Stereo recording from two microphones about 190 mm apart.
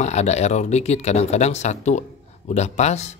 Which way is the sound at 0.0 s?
35° left (ahead or behind).